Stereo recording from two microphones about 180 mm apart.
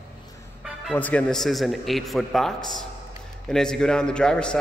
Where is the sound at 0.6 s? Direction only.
Centre (ahead or behind).